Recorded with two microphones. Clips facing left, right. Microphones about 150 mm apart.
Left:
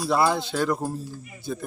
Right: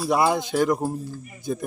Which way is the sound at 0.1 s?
15° right (ahead or behind).